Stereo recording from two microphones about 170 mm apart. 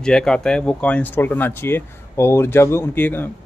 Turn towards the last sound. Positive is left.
turn(degrees=10)  # may be behind; listen again after turning